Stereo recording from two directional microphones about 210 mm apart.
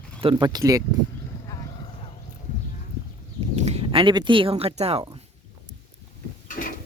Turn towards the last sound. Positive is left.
turn(degrees=40)  # may be behind; listen again after turning